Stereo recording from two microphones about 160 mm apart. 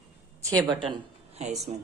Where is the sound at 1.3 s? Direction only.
45° right (ahead or behind).